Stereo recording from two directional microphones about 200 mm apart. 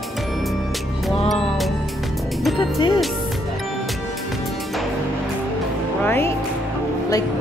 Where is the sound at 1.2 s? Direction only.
Centre (ahead or behind).